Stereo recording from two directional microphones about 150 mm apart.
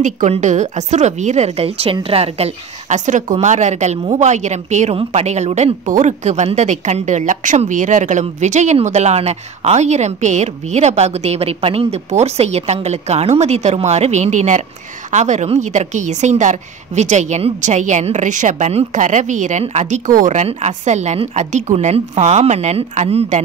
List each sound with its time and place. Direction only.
0.0 s a woman's voice: 55° right (ahead or behind)